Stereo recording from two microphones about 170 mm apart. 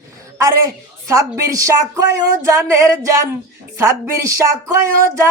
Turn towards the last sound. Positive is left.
turn(degrees=-15)  # may be behind; listen again after turning